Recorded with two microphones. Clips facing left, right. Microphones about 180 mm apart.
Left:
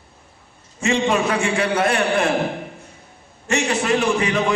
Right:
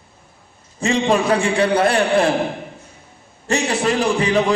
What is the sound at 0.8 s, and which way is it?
A man's voice, 35° right (ahead or behind).